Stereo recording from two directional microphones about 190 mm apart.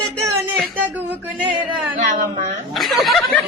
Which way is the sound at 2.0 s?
35° right (ahead or behind).